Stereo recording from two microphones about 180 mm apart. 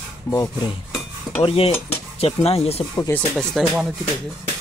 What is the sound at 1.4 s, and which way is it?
Speech, 30° left (ahead or behind).